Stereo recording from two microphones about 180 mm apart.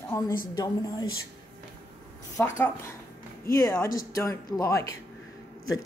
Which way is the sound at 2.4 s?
10° left (ahead or behind).